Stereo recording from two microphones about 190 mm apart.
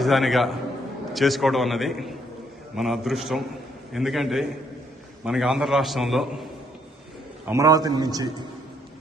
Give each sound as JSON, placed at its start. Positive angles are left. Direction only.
{"t": 0.0, "sound": "a man's voice", "side_deg": 0}
{"t": 7.4, "sound": "a man's voice", "side_deg": -15}